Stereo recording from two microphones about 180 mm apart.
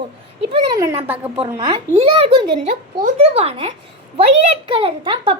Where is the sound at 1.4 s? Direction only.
30° right (ahead or behind).